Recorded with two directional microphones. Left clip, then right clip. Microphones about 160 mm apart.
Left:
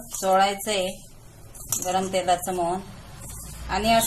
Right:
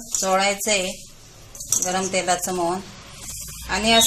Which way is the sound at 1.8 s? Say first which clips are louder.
Even; 20° right (ahead or behind).